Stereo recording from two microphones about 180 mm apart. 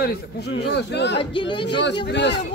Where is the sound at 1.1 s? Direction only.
30° left (ahead or behind).